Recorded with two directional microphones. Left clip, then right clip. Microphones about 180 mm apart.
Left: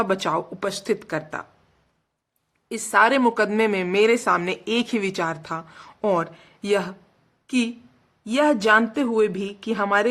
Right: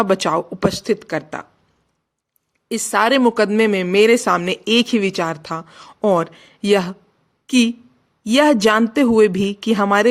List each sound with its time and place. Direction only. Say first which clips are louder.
0.0 s speech: right 5 dB; 30° right (ahead or behind)
2.6 s speech: right 2 dB; 25° right (ahead or behind)